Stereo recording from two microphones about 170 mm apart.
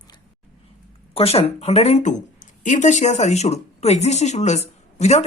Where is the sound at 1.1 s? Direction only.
35° left (ahead or behind).